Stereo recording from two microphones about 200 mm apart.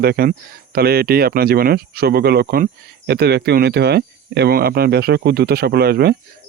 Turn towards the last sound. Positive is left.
turn(degrees=-50)  # may be behind; listen again after turning